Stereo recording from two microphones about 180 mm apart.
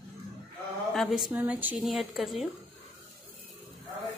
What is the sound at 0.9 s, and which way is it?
A woman's voice, centre (ahead or behind).